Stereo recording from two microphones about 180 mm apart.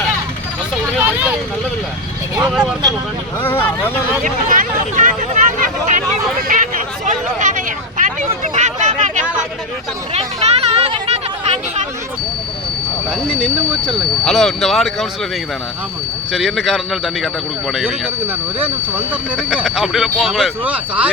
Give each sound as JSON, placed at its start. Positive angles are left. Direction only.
{"t": 0.9, "sound": "vehicle", "side_deg": -10}
{"t": 2.5, "sound": "speech", "side_deg": 0}
{"t": 3.4, "sound": "speech", "side_deg": 10}
{"t": 4.2, "sound": "speech", "side_deg": -45}
{"t": 6.5, "sound": "hubbub", "side_deg": -45}
{"t": 8.5, "sound": "a sound", "side_deg": -40}
{"t": 13.1, "sound": "speech", "side_deg": -5}
{"t": 16.3, "sound": "speech", "side_deg": 0}